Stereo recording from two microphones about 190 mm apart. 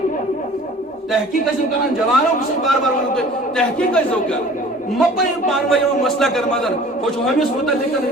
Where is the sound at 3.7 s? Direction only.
5° left (ahead or behind).